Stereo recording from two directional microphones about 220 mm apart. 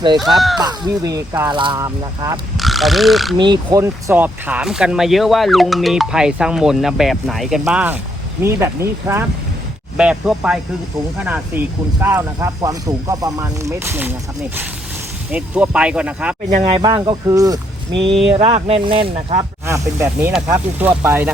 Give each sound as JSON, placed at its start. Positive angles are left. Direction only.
{"t": 0.2, "sound": "speech", "side_deg": 0}
{"t": 0.6, "sound": "speech", "side_deg": -15}
{"t": 2.6, "sound": "speech", "side_deg": 0}
{"t": 3.3, "sound": "speech", "side_deg": -20}
{"t": 15.3, "sound": "speech", "side_deg": -5}
{"t": 16.6, "sound": "speech", "side_deg": -25}
{"t": 18.2, "sound": "speech", "side_deg": -25}
{"t": 19.6, "sound": "speech", "side_deg": -10}